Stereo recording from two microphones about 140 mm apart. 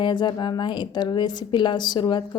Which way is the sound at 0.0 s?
35° left (ahead or behind).